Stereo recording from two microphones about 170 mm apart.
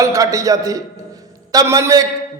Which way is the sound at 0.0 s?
20° right (ahead or behind).